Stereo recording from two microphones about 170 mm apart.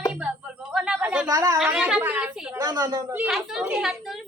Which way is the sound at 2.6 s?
20° right (ahead or behind).